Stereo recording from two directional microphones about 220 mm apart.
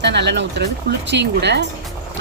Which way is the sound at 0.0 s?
50° right (ahead or behind).